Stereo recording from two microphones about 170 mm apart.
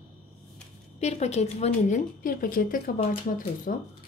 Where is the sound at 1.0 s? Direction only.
40° left (ahead or behind).